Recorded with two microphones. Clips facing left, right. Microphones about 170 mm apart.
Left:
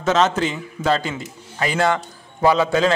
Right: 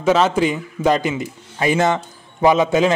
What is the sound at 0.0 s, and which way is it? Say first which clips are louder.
A man's voice: right 3 dB; 10° right (ahead or behind).